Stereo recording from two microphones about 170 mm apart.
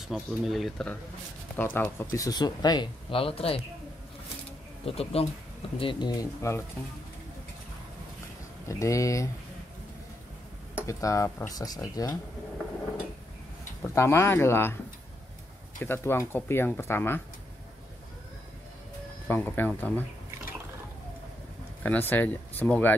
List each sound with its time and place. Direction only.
0.1 s speech: centre (ahead or behind); by 3.6 s 35° left (ahead or behind)
4.8 s speech: 35° left (ahead or behind); by 6.6 s 20° left (ahead or behind)
8.6 s speech: 20° left (ahead or behind)
10.9 s speech: 20° left (ahead or behind)
13.8 s speech: 15° left (ahead or behind)
15.8 s speech: 15° left (ahead or behind)
19.2 s speech: 10° left (ahead or behind)
21.8 s speech: 10° left (ahead or behind)